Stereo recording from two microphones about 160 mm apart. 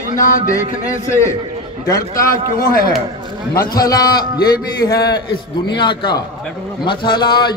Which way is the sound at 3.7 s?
25° left (ahead or behind).